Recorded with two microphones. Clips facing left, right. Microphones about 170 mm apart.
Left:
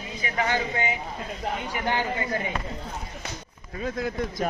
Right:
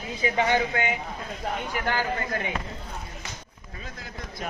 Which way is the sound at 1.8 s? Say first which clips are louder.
Left 2 dB; 15° left (ahead or behind).